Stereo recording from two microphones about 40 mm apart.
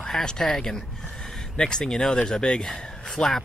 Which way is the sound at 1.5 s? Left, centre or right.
Left.